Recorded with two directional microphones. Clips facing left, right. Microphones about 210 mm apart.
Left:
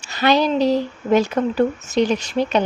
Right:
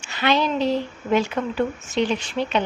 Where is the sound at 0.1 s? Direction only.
40° left (ahead or behind).